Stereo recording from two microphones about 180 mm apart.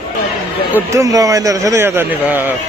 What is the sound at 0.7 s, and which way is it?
Speech, 15° right (ahead or behind).